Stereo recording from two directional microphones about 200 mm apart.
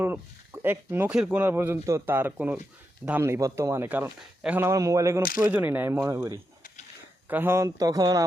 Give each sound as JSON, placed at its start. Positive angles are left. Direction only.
{"t": 0.0, "sound": "speech", "side_deg": -10}
{"t": 5.2, "sound": "speech", "side_deg": 45}
{"t": 5.5, "sound": "speech", "side_deg": -10}